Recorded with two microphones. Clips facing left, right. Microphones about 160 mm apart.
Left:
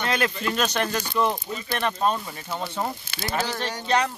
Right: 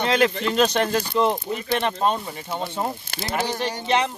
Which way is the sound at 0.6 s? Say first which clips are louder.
Right 6 dB; 30° right (ahead or behind).